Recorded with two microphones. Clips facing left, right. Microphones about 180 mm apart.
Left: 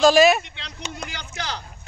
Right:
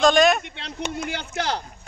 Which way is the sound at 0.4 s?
55° right (ahead or behind).